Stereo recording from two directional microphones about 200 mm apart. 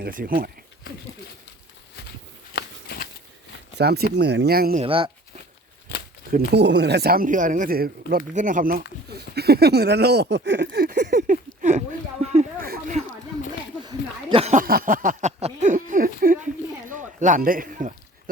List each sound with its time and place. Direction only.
0.0 s speech: 45° right (ahead or behind)
2.5 s a sound: 50° left (ahead or behind)
3.8 s speech: 50° right (ahead or behind)
4.8 s speech: 25° right (ahead or behind)
6.3 s speech: 55° right (ahead or behind)
11.2 s speech: 40° right (ahead or behind)
12.2 s a sound: 35° right (ahead or behind)
12.6 s a sound: 50° right (ahead or behind)
13.8 s a man's voice: 25° right (ahead or behind); by 17.9 s 40° right (ahead or behind)